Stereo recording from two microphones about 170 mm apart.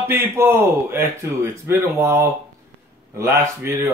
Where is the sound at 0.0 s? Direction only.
15° right (ahead or behind).